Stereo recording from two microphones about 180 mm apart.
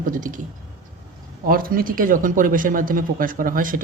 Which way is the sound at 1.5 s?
55° right (ahead or behind).